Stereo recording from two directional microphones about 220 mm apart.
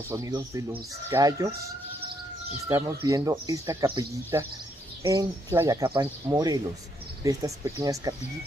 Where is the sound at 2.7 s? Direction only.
15° right (ahead or behind).